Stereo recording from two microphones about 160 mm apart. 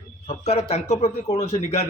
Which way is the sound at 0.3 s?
40° left (ahead or behind).